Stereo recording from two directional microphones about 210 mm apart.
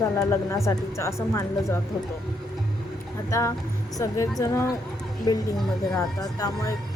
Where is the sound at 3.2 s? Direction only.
15° left (ahead or behind).